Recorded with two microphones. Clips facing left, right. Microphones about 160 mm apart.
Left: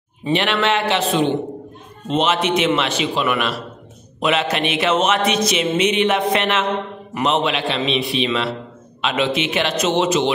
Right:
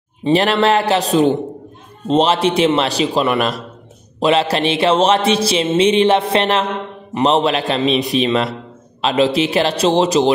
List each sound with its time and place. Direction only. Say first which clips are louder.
0.2 s music: right 5 dB; 35° right (ahead or behind)